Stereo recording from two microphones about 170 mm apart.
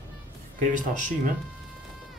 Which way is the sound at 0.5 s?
50° right (ahead or behind).